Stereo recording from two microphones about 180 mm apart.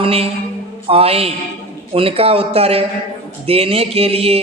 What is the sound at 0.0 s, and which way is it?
A man's voice, 35° right (ahead or behind).